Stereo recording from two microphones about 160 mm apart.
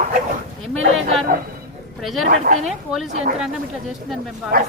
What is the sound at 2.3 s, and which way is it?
Speech, 55° right (ahead or behind).